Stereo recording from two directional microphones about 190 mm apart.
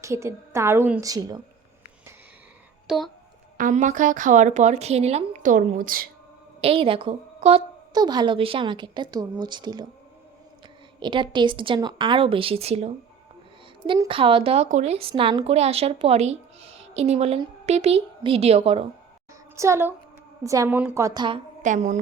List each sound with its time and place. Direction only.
0.0 s a woman's voice: 15° right (ahead or behind)
2.8 s speech: centre (ahead or behind)
3.6 s a woman's voice: 40° right (ahead or behind)
6.6 s a woman's voice: 30° right (ahead or behind)
11.0 s a woman's voice: 25° right (ahead or behind)
19.5 s a woman's voice: 15° right (ahead or behind)
21.6 s a woman's voice: 40° right (ahead or behind)